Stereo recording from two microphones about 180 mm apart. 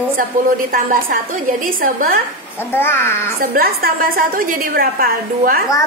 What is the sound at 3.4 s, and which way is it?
A woman's voice, 55° right (ahead or behind).